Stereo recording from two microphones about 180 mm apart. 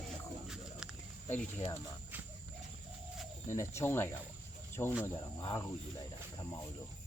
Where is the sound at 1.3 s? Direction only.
10° left (ahead or behind).